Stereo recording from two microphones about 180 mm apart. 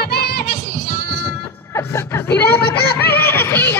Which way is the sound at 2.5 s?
60° left (ahead or behind).